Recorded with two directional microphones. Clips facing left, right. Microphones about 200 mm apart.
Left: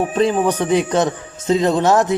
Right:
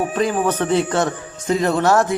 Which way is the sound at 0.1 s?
25° left (ahead or behind).